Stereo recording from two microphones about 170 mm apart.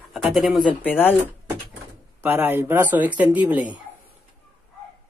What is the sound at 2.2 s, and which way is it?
Speech, 10° right (ahead or behind).